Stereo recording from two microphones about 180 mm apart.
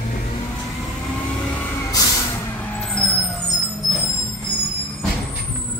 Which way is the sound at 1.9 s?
20° left (ahead or behind).